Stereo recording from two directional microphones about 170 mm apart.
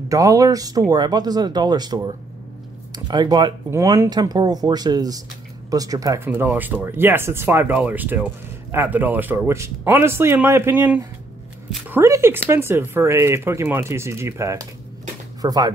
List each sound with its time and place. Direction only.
0.1 s speech: 20° right (ahead or behind)